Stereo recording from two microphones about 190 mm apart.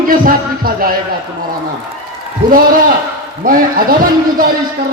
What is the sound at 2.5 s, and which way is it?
A man's voice, 45° right (ahead or behind).